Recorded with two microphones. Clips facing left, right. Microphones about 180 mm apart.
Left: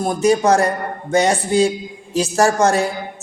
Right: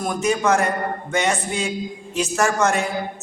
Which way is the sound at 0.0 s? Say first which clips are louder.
Left 5 dB; 35° left (ahead or behind).